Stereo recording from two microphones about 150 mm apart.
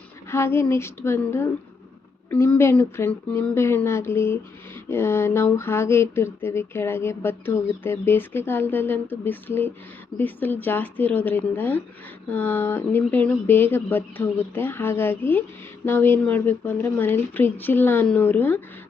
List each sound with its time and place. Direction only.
0.3 s speech: 15° left (ahead or behind)